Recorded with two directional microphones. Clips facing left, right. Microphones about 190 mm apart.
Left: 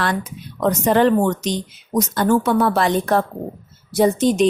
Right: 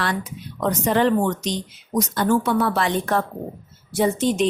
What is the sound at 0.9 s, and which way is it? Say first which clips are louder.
A woman's voice: left 3 dB; 50° left (ahead or behind).